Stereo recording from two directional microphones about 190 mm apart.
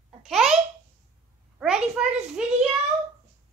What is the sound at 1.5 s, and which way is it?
A child's voice, 5° right (ahead or behind).